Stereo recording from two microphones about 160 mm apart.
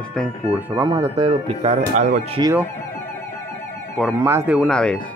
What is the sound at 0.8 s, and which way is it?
Speech, 25° right (ahead or behind).